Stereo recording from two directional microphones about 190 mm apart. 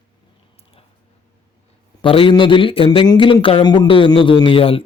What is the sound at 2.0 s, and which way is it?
Speech, 25° left (ahead or behind).